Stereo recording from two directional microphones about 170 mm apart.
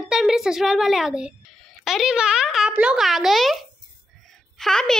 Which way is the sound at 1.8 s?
Centre (ahead or behind).